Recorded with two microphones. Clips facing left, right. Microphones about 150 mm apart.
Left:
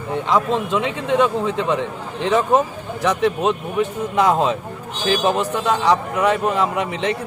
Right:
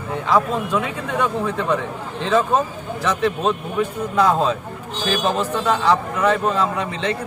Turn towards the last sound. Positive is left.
turn(degrees=15)  # may be behind; listen again after turning